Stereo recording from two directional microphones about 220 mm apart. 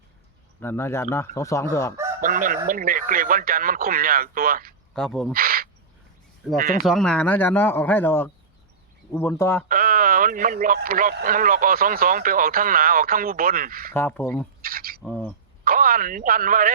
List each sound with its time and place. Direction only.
0.6 s speech: 10° left (ahead or behind)
2.2 s speech: 40° right (ahead or behind)
4.9 s speech: centre (ahead or behind)
5.3 s speech: 40° right (ahead or behind)
6.8 s speech: centre (ahead or behind)
9.6 s speech: 40° right (ahead or behind)
13.9 s speech: 10° left (ahead or behind)
14.6 s a sound: 40° right (ahead or behind)
15.0 s a sound: 5° left (ahead or behind)
15.6 s speech: 40° right (ahead or behind)